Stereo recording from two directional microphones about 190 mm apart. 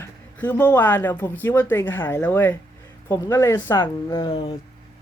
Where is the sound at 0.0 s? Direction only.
10° left (ahead or behind).